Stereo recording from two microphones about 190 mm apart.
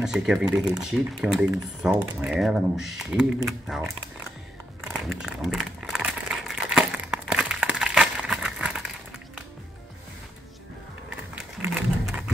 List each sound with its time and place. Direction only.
0.0 s speech: 5° right (ahead or behind)
4.9 s crumpling: centre (ahead or behind)
11.3 s a sound: 5° right (ahead or behind)